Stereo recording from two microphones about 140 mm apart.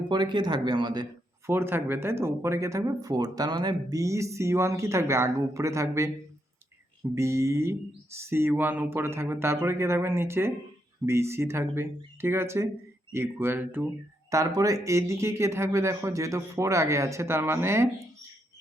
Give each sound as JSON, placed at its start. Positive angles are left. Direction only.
{"t": 0.1, "sound": "speech", "side_deg": -30}
{"t": 1.5, "sound": "speech", "side_deg": -15}
{"t": 7.2, "sound": "speech", "side_deg": -20}